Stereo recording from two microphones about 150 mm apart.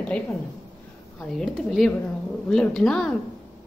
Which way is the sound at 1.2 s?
5° left (ahead or behind).